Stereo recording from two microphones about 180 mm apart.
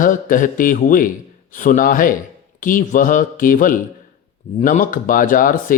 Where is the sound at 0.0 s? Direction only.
50° left (ahead or behind).